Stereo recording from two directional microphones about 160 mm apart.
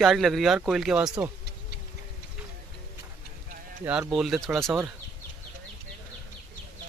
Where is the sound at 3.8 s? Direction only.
5° right (ahead or behind).